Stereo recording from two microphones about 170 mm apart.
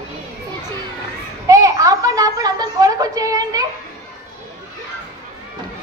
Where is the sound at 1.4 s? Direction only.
20° right (ahead or behind).